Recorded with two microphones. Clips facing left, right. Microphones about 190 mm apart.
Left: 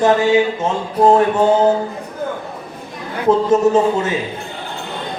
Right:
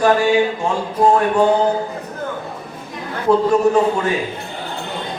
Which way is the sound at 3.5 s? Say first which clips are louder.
Left 1 dB; 20° left (ahead or behind).